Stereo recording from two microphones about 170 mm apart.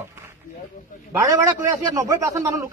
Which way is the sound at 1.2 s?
20° right (ahead or behind).